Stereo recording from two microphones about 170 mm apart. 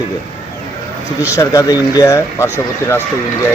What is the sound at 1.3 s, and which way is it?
Speech, 20° left (ahead or behind).